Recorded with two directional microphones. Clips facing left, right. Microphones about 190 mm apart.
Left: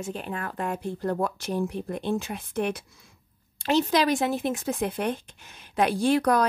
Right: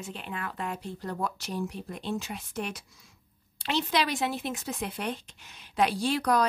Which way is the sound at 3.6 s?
45° left (ahead or behind).